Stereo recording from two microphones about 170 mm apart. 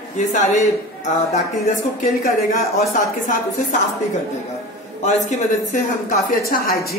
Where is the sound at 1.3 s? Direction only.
40° left (ahead or behind).